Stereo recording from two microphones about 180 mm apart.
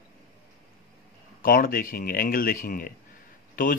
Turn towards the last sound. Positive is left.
turn(degrees=50)  # may be behind; listen again after turning